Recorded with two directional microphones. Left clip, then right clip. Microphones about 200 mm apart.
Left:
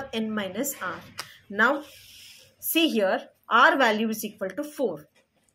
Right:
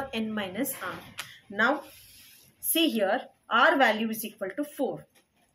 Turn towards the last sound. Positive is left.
turn(degrees=20)  # may be behind; listen again after turning